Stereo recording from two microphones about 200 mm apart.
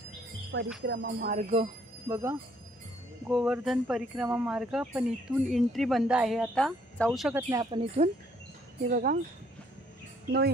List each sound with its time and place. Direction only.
0.5 s music: 70° right (ahead or behind)
1.3 s speech: 35° right (ahead or behind)
2.0 s speech: 15° right (ahead or behind)
7.4 s speech: 15° right (ahead or behind)
8.8 s speech: 45° right (ahead or behind)